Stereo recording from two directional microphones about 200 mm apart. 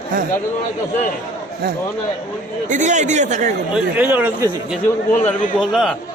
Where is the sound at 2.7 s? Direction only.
40° right (ahead or behind).